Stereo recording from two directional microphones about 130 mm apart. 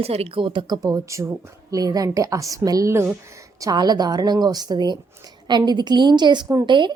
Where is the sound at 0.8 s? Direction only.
25° right (ahead or behind).